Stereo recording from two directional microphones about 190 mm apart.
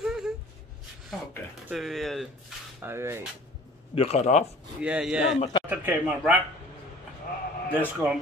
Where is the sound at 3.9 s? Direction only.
35° left (ahead or behind).